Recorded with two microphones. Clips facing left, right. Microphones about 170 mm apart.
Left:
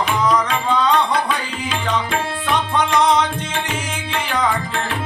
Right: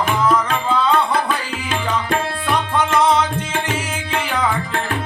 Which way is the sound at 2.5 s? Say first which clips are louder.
Even; 5° right (ahead or behind).